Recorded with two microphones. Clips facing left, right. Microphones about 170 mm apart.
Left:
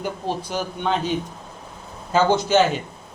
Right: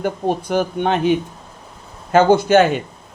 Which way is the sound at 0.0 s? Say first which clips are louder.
Right 6 dB; 55° right (ahead or behind).